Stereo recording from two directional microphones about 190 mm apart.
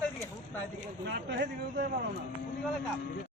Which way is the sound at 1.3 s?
65° right (ahead or behind).